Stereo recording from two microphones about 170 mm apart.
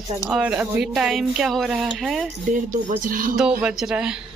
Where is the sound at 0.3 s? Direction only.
5° right (ahead or behind).